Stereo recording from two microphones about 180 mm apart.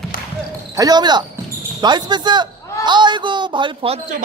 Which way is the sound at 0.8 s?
25° right (ahead or behind).